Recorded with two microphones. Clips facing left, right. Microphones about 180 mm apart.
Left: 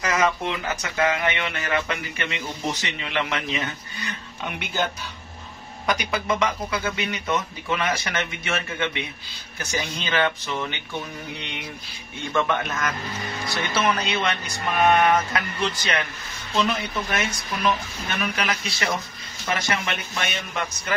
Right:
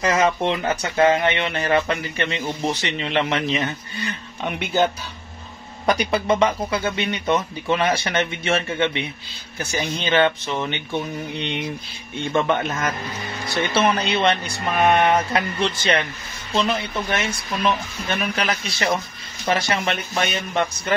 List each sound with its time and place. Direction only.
0.0 s speech: 30° right (ahead or behind)
5.9 s speech: 30° right (ahead or behind)
18.3 s speech: 30° right (ahead or behind)